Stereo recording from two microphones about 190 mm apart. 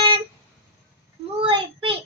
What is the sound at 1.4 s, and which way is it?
Child singing, 25° right (ahead or behind).